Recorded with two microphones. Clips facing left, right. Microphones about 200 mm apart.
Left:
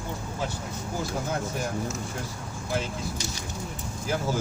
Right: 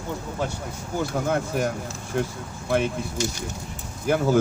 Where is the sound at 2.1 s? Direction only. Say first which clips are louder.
Right 8 dB; 60° right (ahead or behind).